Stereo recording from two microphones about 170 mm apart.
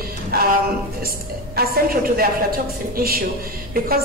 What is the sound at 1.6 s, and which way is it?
A woman's voice, 60° right (ahead or behind).